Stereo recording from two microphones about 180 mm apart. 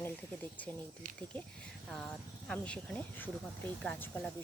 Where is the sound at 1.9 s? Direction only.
5° left (ahead or behind).